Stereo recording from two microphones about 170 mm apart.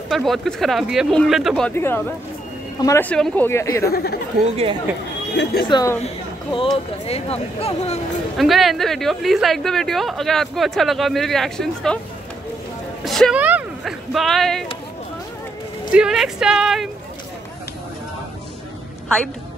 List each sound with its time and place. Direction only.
0.1 s speech: centre (ahead or behind)
1.8 s speech: 15° left (ahead or behind)
3.8 s speech: 65° left (ahead or behind)
5.3 s speech: 80° left
5.7 s a woman's voice: 25° left (ahead or behind); by 8.0 s 40° left (ahead or behind)
8.4 s speech: centre (ahead or behind)
13.0 s speech: centre (ahead or behind)
15.9 s speech: 5° right (ahead or behind)